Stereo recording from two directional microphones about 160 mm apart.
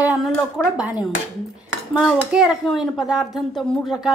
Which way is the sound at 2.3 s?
5° right (ahead or behind).